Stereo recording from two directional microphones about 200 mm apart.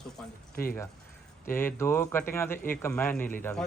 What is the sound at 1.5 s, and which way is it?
A man's voice, 10° left (ahead or behind).